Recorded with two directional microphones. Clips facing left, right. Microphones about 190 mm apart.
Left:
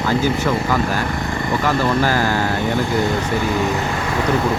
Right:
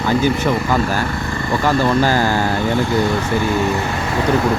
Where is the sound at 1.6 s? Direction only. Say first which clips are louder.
Right 3 dB; 25° right (ahead or behind).